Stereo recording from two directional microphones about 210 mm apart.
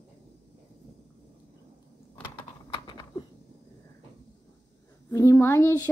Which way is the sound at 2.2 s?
20° left (ahead or behind).